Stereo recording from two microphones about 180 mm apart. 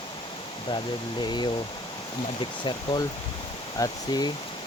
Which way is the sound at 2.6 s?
25° left (ahead or behind).